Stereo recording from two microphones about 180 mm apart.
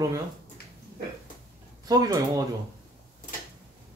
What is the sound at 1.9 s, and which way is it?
Speech, 20° right (ahead or behind).